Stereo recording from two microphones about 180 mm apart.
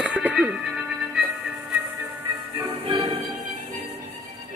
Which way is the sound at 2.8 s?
30° right (ahead or behind).